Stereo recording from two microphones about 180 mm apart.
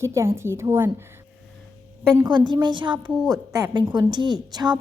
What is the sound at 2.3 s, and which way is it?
A woman's voice, 25° right (ahead or behind).